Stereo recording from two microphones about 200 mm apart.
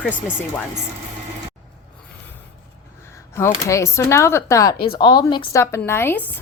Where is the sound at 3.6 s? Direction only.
15° left (ahead or behind).